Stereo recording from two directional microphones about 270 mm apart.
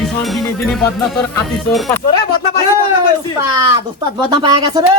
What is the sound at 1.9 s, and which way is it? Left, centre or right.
Speech, centre.